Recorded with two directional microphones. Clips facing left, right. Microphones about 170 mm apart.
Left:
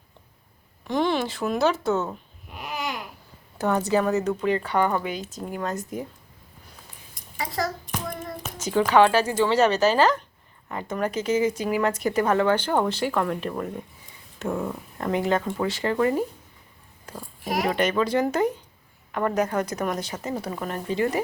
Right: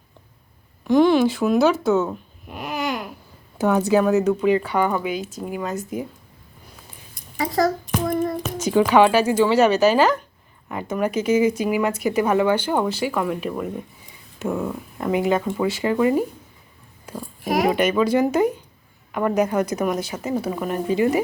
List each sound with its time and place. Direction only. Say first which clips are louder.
0.9 s speech: right 9 dB; 5° right (ahead or behind)
2.5 s babbling: right 6 dB; 55° right (ahead or behind)
3.6 s speech: right 5 dB; 5° right (ahead or behind)
7.3 s a child's voice: right 8 dB; 45° right (ahead or behind)
8.5 s speech: right 3 dB; 10° right (ahead or behind)
17.1 s a sound: right 5 dB; 10° right (ahead or behind)
17.7 s speech: right 3 dB; 10° right (ahead or behind)